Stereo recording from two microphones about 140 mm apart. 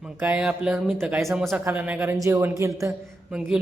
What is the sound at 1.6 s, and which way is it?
Speech, 15° right (ahead or behind).